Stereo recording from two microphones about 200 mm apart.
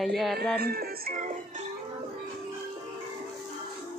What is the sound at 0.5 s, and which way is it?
Music, 50° right (ahead or behind).